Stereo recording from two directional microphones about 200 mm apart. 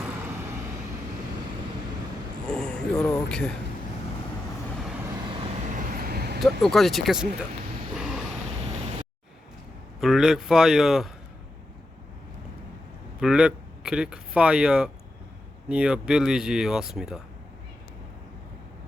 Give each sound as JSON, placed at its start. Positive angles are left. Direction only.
{"t": 2.5, "sound": "a sound", "side_deg": 5}
{"t": 3.2, "sound": "speech", "side_deg": 5}
{"t": 5.7, "sound": "vehicle", "side_deg": -45}
{"t": 6.4, "sound": "speech", "side_deg": 0}
{"t": 10.0, "sound": "speech", "side_deg": 0}
{"t": 13.1, "sound": "speech", "side_deg": -5}